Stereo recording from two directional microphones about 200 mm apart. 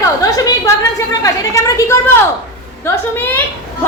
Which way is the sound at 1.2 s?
15° left (ahead or behind).